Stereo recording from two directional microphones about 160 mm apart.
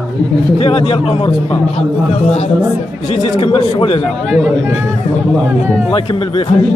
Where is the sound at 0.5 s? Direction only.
40° left (ahead or behind).